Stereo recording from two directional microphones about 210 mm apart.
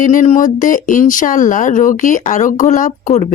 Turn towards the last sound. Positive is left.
turn(degrees=35)  # may be behind; listen again after turning